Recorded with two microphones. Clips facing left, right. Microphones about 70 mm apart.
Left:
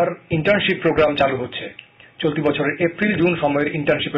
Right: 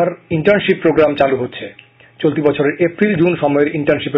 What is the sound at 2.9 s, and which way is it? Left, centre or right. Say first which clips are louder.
Speech: right 5 dB; centre.